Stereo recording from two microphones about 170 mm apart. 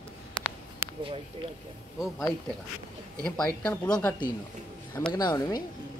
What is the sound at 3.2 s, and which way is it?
Speech, 5° left (ahead or behind).